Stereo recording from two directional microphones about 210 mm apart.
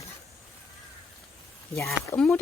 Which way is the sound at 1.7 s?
10° left (ahead or behind).